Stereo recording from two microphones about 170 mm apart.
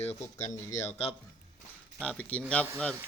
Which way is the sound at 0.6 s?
15° left (ahead or behind).